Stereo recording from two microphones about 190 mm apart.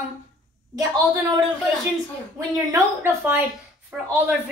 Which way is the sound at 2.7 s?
10° right (ahead or behind).